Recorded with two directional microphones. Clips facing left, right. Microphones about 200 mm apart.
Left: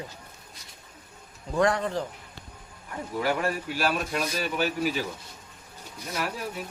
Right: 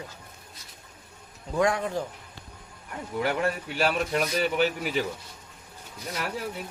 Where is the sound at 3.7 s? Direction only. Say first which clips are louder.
Right 2 dB; 25° right (ahead or behind).